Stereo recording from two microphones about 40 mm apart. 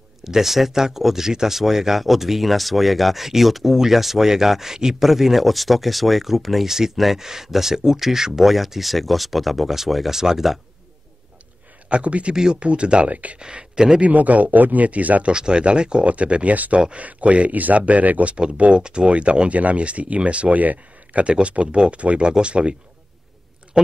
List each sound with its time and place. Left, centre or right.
0.2 s speech: centre
11.9 s speech: right
12.4 s speech: centre
13.1 s speech: right
13.4 s speech: right
14.0 s speech: right
15.3 s speech: right
16.5 s speech: right
18.6 s speech: right
21.3 s speech: right